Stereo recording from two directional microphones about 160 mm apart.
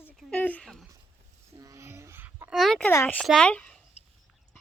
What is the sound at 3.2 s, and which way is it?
Speech, 5° left (ahead or behind).